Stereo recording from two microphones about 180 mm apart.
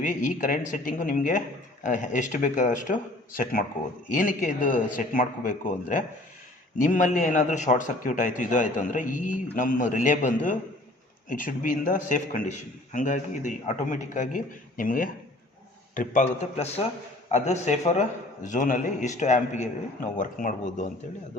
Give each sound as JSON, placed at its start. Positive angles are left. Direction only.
{"t": 0.0, "sound": "a man's voice", "side_deg": 45}